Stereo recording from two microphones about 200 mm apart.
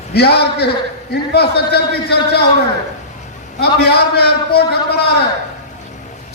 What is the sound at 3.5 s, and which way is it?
A man's voice, 55° left (ahead or behind).